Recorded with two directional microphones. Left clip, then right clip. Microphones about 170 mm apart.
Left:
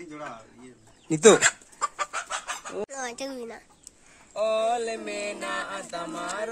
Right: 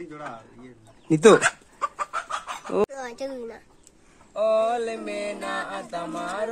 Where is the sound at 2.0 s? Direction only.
55° left (ahead or behind).